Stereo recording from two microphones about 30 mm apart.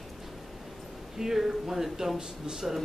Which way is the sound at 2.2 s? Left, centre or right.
Right.